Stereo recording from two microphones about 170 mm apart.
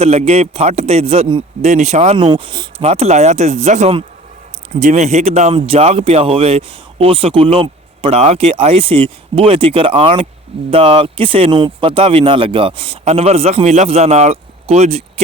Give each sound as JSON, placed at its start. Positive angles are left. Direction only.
{"t": 0.0, "sound": "a man's voice", "side_deg": -40}
{"t": 2.8, "sound": "a man's voice", "side_deg": -40}